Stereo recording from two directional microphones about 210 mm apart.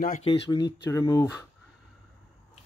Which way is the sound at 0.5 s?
15° left (ahead or behind).